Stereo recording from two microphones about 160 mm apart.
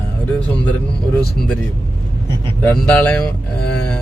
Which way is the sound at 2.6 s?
10° left (ahead or behind).